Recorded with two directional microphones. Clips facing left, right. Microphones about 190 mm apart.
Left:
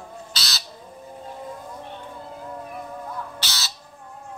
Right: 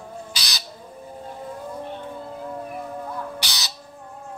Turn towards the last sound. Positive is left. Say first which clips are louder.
# even
turn(degrees=-15)  # may be behind; listen again after turning